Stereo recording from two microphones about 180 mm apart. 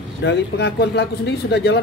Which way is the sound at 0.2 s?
70° left (ahead or behind).